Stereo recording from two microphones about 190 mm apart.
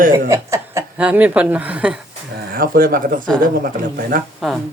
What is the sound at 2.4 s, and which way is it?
A man's voice, 50° right (ahead or behind).